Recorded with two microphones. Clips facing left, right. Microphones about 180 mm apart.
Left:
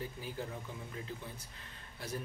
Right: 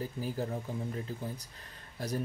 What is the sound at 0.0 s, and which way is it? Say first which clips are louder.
Speech: right 6 dB; 40° right (ahead or behind).